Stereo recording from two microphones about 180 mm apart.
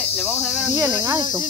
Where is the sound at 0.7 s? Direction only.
10° right (ahead or behind).